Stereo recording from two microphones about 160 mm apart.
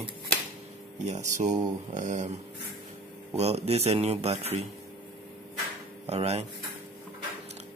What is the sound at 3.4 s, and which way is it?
A man's voice, 40° right (ahead or behind).